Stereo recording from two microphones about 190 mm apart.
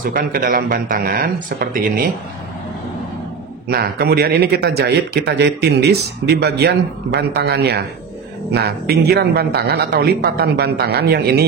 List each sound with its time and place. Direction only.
0.0 s speech: 45° right (ahead or behind)
3.6 s speech: 55° right (ahead or behind)